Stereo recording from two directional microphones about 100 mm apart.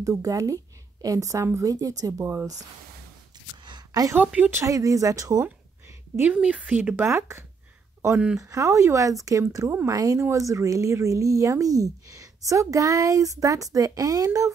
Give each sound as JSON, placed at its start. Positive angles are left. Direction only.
{"t": 0.0, "sound": "speech", "side_deg": -35}
{"t": 3.6, "sound": "a sound", "side_deg": -40}
{"t": 4.1, "sound": "speech", "side_deg": -20}
{"t": 4.6, "sound": "speech", "side_deg": -35}
{"t": 6.1, "sound": "speech", "side_deg": -15}